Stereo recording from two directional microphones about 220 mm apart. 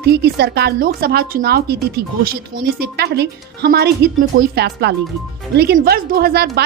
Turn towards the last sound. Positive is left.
turn(degrees=-45)  # may be behind; listen again after turning